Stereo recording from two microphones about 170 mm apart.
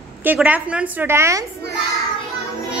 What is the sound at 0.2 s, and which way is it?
A woman's voice, 10° right (ahead or behind).